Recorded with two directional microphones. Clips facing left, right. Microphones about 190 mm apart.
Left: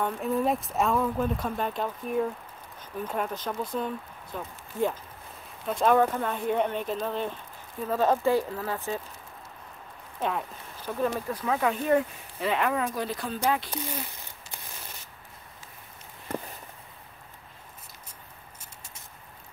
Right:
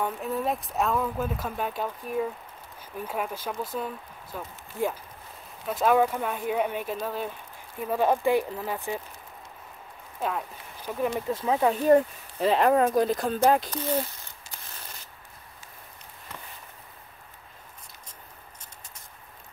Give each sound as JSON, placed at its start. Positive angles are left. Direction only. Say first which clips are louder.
{"t": 0.0, "sound": "speech", "louder": "left 2 dB", "side_deg": 0}
{"t": 10.8, "sound": "speech", "louder": "even", "side_deg": -15}
{"t": 11.8, "sound": "speech", "louder": "right 5 dB", "side_deg": -35}